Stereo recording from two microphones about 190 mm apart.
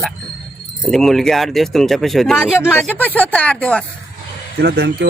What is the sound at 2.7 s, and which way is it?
Speech, 10° left (ahead or behind).